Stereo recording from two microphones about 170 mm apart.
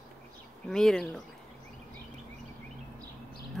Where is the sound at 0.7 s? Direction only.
5° left (ahead or behind).